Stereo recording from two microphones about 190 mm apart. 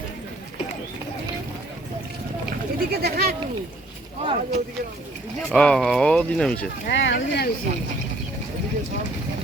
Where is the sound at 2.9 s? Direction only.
55° right (ahead or behind).